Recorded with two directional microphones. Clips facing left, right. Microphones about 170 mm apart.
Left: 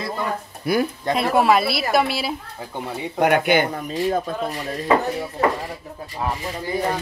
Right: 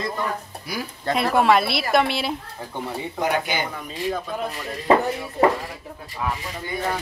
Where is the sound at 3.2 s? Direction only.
60° left (ahead or behind).